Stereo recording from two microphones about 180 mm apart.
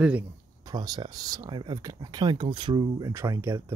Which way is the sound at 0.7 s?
20° right (ahead or behind).